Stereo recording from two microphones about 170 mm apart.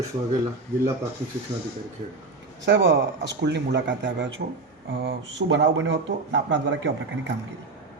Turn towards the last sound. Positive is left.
turn(degrees=-90)